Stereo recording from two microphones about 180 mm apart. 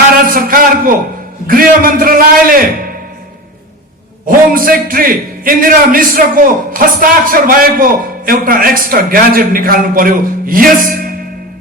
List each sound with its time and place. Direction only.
0.3 s a sound: 50° right (ahead or behind)
1.5 s a man's voice: 50° right (ahead or behind)
4.3 s a man's voice: 50° right (ahead or behind)